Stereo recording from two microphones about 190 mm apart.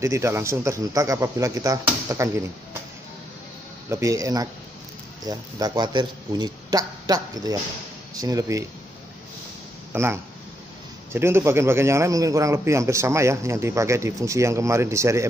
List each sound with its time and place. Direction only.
0.0 s a man's voice: 15° right (ahead or behind)
3.9 s a man's voice: 15° right (ahead or behind)
9.9 s a man's voice: 15° right (ahead or behind)